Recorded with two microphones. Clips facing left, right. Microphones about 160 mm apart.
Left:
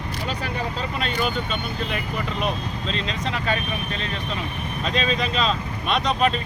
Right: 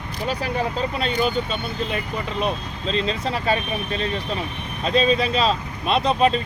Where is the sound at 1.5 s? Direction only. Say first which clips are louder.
Right 2 dB; 35° right (ahead or behind).